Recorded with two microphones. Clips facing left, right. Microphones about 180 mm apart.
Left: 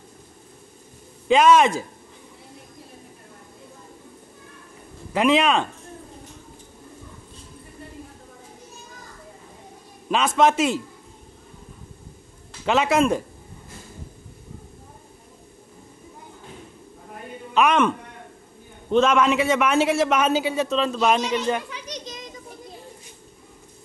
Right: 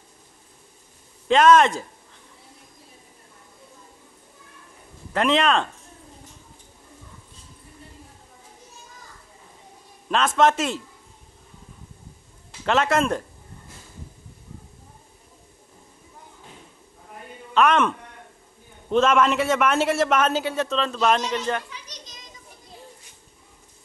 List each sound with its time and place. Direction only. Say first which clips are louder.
1.3 s a man's voice: even; 5° left (ahead or behind)
5.1 s a man's voice: left 2 dB; 5° left (ahead or behind)
10.0 s a man's voice: left 1 dB; 5° left (ahead or behind)
12.6 s a man's voice: left 2 dB; 5° left (ahead or behind)
17.6 s a man's voice: even; centre (ahead or behind)
21.6 s children playing: left 8 dB; 65° left (ahead or behind)